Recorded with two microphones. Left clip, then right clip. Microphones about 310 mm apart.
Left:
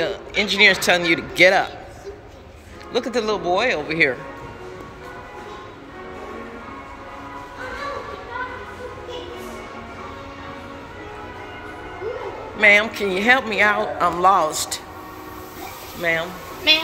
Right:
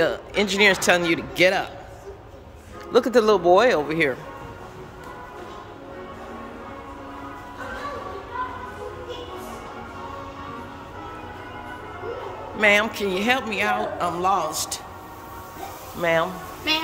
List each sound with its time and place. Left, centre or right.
0.0 s speech: centre
2.9 s speech: centre
12.5 s speech: centre
16.0 s speech: centre